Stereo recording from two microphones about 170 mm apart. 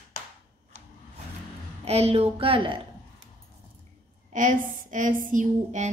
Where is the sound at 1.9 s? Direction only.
40° right (ahead or behind).